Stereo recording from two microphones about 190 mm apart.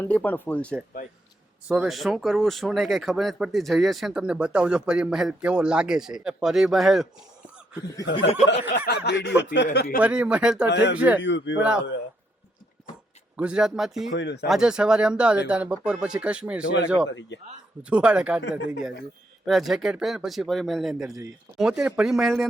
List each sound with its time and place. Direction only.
0.0 s speech: 10° left (ahead or behind)
1.6 s speech: 5° right (ahead or behind)
8.4 s speech: 65° left (ahead or behind)
9.6 s speech: 55° left (ahead or behind)
10.0 s speech: 5° right (ahead or behind)
10.7 s speech: 65° left (ahead or behind)
10.9 s a man's voice: 5° right (ahead or behind)
11.2 s speech: 70° left (ahead or behind)
13.3 s speech: 5° right (ahead or behind)
14.1 s speech: 70° left (ahead or behind)
14.4 s speech: centre (ahead or behind)
17.1 s speech: 70° left (ahead or behind)
17.8 s speech: 5° right (ahead or behind)